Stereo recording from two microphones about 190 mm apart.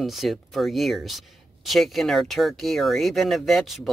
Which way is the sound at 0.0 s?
Centre (ahead or behind).